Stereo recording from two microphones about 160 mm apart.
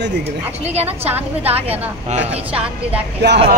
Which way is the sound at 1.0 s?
10° right (ahead or behind).